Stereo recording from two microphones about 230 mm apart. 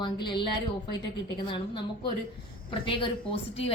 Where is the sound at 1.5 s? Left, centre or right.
Left.